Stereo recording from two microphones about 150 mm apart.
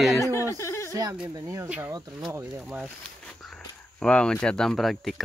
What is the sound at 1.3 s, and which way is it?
Speech, 20° right (ahead or behind).